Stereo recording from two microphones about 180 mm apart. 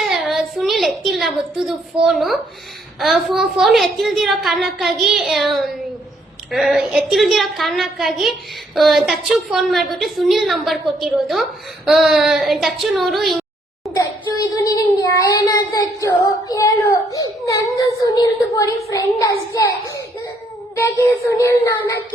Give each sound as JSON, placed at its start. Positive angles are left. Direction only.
{"t": 0.0, "sound": "a sound", "side_deg": 0}
{"t": 3.0, "sound": "a woman's voice", "side_deg": 0}
{"t": 14.3, "sound": "speech", "side_deg": 20}
{"t": 20.7, "sound": "child singing", "side_deg": 15}